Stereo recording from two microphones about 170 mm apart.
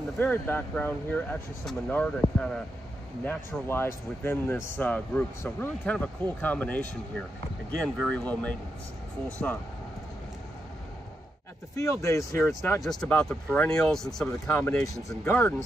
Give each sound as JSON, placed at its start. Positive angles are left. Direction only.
{"t": 0.2, "sound": "a man's voice", "side_deg": 10}
{"t": 11.7, "sound": "a man's voice", "side_deg": 15}
{"t": 12.8, "sound": "speech", "side_deg": 5}